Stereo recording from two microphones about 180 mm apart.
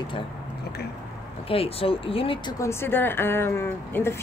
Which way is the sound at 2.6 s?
15° left (ahead or behind).